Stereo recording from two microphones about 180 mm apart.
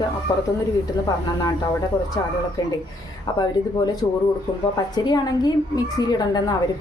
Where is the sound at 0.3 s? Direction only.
20° left (ahead or behind).